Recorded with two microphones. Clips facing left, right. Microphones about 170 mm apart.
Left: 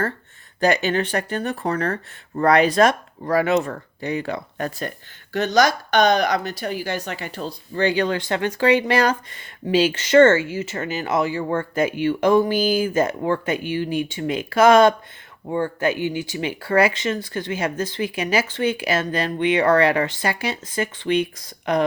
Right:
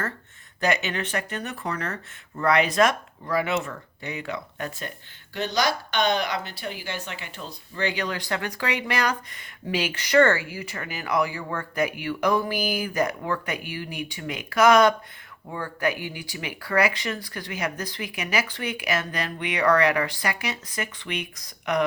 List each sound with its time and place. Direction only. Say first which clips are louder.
0.6 s speech: left 6 dB; 35° left (ahead or behind)